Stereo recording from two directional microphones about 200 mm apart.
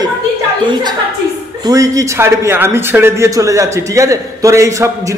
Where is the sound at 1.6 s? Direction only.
15° right (ahead or behind).